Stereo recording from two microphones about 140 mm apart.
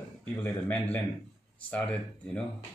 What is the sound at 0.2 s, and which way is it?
Speech, 15° left (ahead or behind).